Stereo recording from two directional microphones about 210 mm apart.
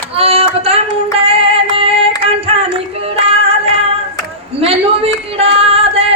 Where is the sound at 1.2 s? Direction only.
25° right (ahead or behind).